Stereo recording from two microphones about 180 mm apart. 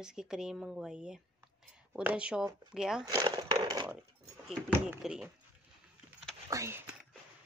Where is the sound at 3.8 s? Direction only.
10° right (ahead or behind).